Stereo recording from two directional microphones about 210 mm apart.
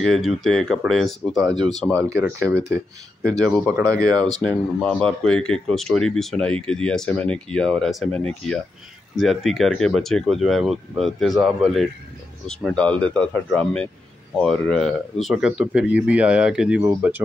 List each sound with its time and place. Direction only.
0.0 s speech: centre (ahead or behind)
2.0 s speech: 15° right (ahead or behind)
3.8 s speech: 15° right (ahead or behind)
4.4 s speech: 5° left (ahead or behind)